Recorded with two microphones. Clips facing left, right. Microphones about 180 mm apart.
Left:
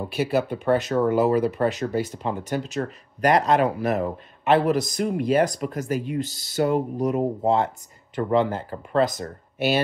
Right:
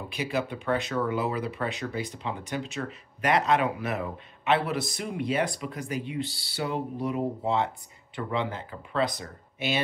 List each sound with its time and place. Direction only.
0.1 s speech: 50° left (ahead or behind)